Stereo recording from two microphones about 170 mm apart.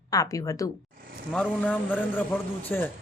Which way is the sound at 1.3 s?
5° left (ahead or behind).